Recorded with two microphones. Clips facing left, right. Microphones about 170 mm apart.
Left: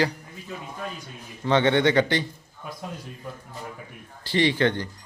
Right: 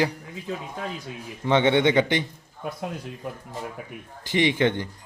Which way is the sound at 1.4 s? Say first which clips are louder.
Right 1 dB; 15° right (ahead or behind).